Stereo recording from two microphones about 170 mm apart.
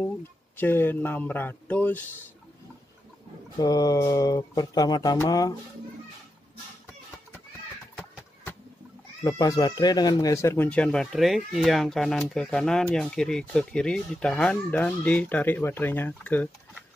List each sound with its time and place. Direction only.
0.6 s speech: 10° left (ahead or behind)
3.5 s speech: 20° left (ahead or behind)
9.2 s speech: 20° left (ahead or behind)